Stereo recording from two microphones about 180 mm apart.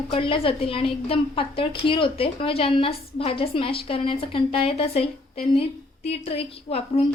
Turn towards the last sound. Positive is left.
turn(degrees=35)  # may be behind; listen again after turning